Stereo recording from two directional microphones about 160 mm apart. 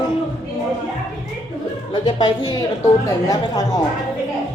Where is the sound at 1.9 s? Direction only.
30° left (ahead or behind).